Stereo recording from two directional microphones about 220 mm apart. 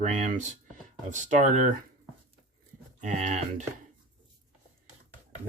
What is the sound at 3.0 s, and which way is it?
Speech, 30° right (ahead or behind).